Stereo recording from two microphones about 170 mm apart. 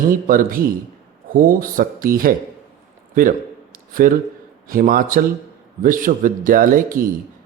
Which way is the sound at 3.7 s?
55° right (ahead or behind).